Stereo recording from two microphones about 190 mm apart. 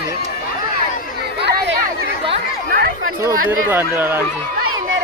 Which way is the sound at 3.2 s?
15° right (ahead or behind).